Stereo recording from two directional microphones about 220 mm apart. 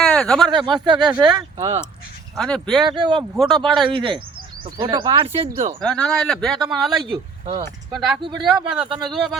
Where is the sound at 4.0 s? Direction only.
20° right (ahead or behind).